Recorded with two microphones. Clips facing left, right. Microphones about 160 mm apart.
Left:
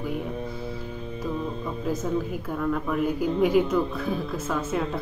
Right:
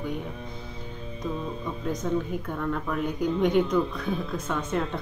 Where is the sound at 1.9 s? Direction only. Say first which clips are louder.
Left 1 dB; 5° left (ahead or behind).